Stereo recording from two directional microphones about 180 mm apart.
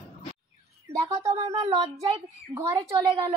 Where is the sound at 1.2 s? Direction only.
20° right (ahead or behind).